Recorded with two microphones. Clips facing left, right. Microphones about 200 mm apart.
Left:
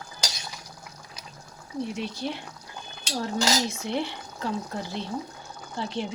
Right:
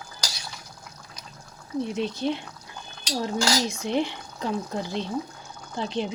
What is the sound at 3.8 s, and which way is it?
Speech, 15° right (ahead or behind).